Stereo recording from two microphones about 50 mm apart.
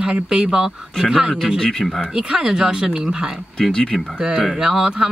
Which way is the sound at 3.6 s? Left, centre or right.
Centre.